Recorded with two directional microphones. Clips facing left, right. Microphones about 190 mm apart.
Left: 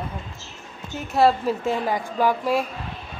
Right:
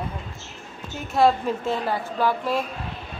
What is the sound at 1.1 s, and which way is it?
A woman's voice, 10° left (ahead or behind).